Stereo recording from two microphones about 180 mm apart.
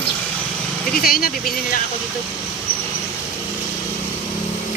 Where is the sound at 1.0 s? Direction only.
55° left (ahead or behind).